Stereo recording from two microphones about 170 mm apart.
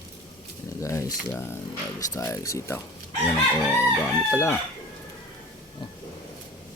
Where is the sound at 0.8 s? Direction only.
20° left (ahead or behind).